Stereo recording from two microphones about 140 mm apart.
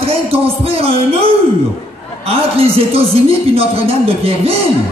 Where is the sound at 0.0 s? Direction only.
45° right (ahead or behind).